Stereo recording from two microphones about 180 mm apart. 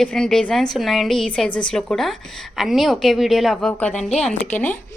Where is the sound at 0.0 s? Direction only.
5° left (ahead or behind).